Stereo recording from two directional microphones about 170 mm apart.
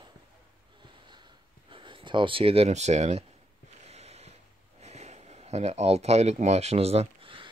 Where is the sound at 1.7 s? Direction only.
30° right (ahead or behind).